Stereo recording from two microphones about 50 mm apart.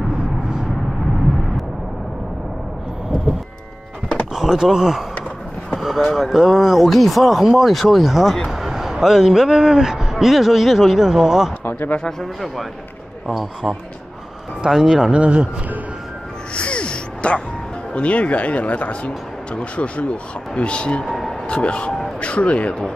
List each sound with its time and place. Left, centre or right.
4.4 s speech: centre
5.7 s a sound: centre
6.1 s speech: centre
14.6 s speech: centre
15.1 s speech: right
16.5 s a sound: left
17.9 s speech: left
21.0 s vehicle: centre
21.5 s speech: left